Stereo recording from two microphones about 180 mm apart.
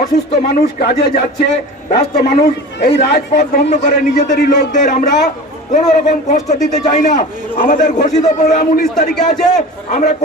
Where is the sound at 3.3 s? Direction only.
65° left (ahead or behind).